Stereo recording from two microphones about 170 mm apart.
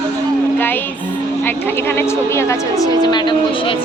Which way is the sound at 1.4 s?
15° left (ahead or behind).